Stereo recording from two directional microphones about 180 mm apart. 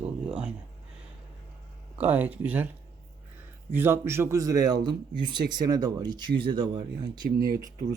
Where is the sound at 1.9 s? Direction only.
10° right (ahead or behind).